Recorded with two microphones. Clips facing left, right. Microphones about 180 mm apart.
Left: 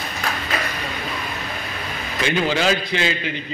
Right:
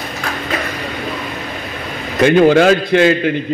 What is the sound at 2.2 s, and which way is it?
A man's voice, 55° right (ahead or behind).